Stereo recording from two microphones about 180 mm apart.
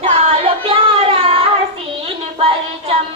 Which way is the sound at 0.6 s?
30° right (ahead or behind).